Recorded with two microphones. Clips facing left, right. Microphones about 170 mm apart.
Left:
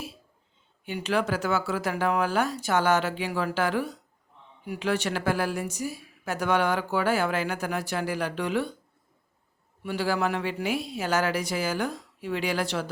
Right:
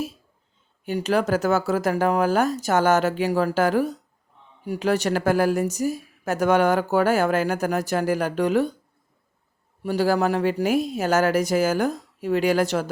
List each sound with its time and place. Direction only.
0.9 s a woman's voice: 40° right (ahead or behind)
9.8 s a woman's voice: 40° right (ahead or behind)